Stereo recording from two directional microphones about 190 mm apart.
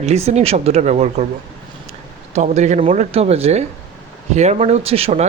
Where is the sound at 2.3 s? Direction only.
40° right (ahead or behind).